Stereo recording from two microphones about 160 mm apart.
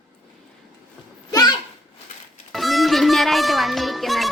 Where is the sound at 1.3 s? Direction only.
25° left (ahead or behind).